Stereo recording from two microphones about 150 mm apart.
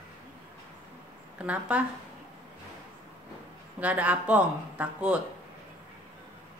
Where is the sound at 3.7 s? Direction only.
10° right (ahead or behind).